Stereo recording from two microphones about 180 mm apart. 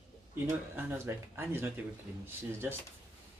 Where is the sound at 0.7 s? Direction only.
10° right (ahead or behind).